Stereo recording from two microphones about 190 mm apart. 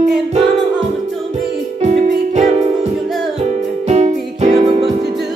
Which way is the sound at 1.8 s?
35° right (ahead or behind).